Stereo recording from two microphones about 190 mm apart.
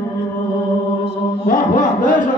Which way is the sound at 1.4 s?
45° left (ahead or behind).